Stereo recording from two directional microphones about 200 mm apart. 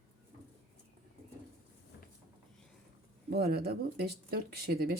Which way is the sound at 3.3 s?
50° right (ahead or behind).